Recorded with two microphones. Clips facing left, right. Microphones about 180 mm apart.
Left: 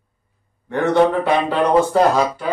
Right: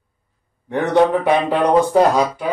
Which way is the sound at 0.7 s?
15° right (ahead or behind).